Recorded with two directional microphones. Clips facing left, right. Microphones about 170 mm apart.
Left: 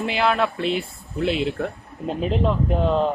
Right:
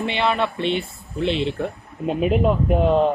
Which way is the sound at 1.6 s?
10° right (ahead or behind).